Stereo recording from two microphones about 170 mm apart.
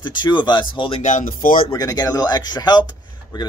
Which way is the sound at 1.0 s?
50° left (ahead or behind).